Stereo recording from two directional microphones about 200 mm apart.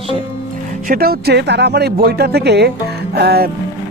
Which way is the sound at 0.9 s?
50° right (ahead or behind).